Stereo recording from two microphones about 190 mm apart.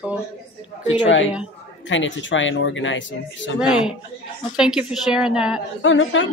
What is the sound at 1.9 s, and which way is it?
Speech, 80° left.